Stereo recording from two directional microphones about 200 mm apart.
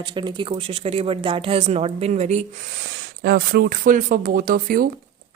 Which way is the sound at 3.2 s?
50° right (ahead or behind).